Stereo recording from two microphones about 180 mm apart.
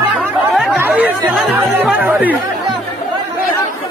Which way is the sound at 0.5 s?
5° right (ahead or behind).